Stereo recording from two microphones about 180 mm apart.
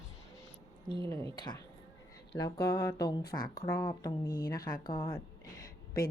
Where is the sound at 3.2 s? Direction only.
55° left (ahead or behind).